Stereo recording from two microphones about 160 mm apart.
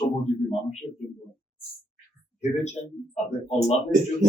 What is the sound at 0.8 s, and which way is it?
Speech, 25° left (ahead or behind).